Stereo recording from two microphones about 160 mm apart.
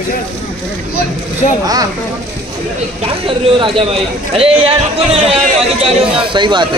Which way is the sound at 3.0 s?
35° right (ahead or behind).